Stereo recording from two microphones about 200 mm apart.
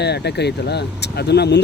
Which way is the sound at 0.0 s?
55° left (ahead or behind).